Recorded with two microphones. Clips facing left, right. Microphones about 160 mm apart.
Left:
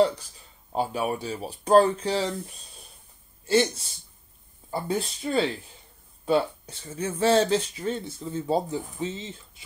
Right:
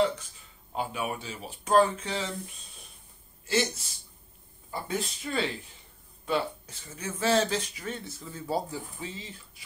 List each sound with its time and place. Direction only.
0.7 s speech: 35° left (ahead or behind)
3.4 s speech: 30° left (ahead or behind)